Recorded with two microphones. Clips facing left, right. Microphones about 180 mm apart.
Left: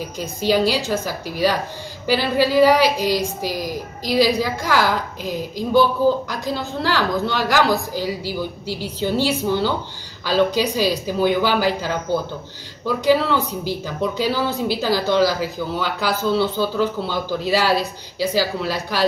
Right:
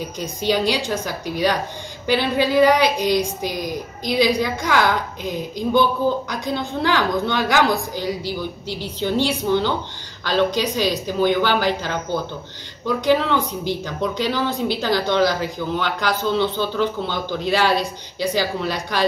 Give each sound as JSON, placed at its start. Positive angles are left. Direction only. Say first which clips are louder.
{"t": 0.2, "sound": "a woman's voice", "louder": "left 3 dB", "side_deg": 5}